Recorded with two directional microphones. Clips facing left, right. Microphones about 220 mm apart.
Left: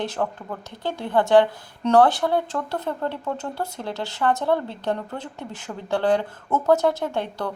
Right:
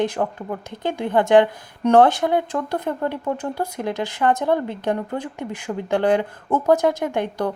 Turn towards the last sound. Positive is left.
turn(degrees=-15)  # may be behind; listen again after turning